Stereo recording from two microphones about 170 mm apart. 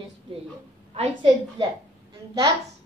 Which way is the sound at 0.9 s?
30° right (ahead or behind).